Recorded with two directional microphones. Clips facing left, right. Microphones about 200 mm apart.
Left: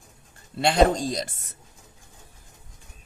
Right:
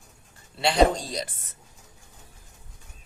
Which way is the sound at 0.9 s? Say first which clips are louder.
Left 5 dB; 45° left (ahead or behind).